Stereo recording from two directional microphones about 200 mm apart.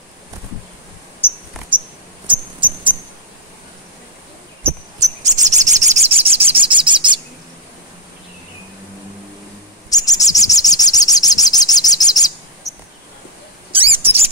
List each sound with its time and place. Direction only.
2.2 s mouse: 25° right (ahead or behind)
5.0 s chirp: 35° right (ahead or behind)
9.8 s bird: 20° left (ahead or behind)
13.7 s mouse: 25° right (ahead or behind)